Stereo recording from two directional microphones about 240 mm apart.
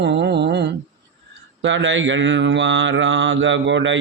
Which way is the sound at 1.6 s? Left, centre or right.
Right.